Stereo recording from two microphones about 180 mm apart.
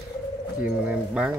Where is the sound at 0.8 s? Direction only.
5° right (ahead or behind).